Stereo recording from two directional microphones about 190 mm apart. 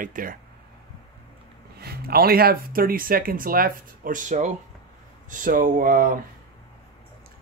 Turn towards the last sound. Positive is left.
turn(degrees=-45)  # may be behind; listen again after turning